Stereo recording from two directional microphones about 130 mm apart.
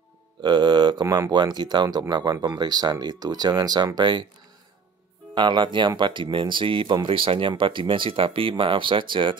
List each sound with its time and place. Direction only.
0.4 s speech: 35° right (ahead or behind)
1.0 s speech: 25° right (ahead or behind)
1.3 s speech: 35° right (ahead or behind)
5.3 s speech: 35° right (ahead or behind)